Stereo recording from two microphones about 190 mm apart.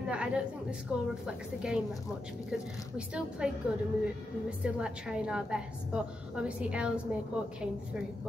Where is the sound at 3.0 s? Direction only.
5° right (ahead or behind).